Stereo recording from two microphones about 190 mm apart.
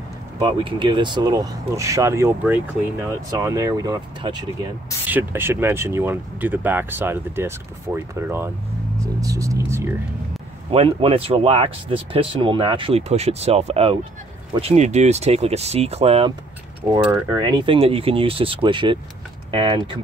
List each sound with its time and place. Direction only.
0.4 s speech: 25° right (ahead or behind)
5.0 s speech: 10° right (ahead or behind)
9.0 s speech: 15° right (ahead or behind)
10.7 s speech: 30° right (ahead or behind)
17.0 s speech: 10° right (ahead or behind)
17.4 s speech: 25° right (ahead or behind)